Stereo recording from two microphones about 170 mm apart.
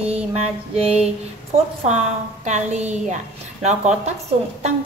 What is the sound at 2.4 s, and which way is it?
Speech, 45° right (ahead or behind).